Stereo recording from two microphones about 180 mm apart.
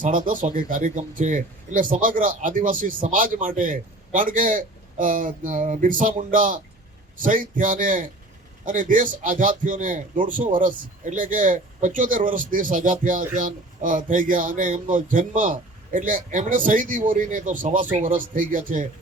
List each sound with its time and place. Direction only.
0.3 s a man's voice: 50° right (ahead or behind)